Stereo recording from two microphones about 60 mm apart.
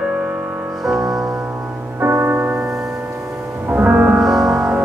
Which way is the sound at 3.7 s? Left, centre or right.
Right.